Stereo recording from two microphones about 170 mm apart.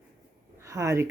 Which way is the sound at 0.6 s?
20° right (ahead or behind).